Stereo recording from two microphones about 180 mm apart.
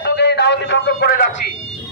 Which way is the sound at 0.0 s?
70° left (ahead or behind).